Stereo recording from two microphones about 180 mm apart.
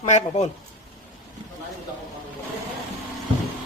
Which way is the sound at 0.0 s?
40° left (ahead or behind).